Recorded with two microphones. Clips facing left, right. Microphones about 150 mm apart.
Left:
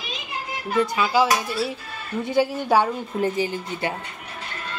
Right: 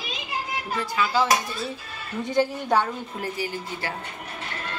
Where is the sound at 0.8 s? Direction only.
20° left (ahead or behind); by 2.8 s 5° left (ahead or behind).